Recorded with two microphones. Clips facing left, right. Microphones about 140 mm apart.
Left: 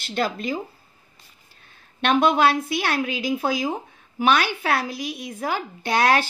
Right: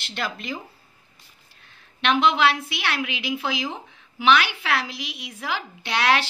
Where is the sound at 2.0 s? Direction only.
50° left (ahead or behind).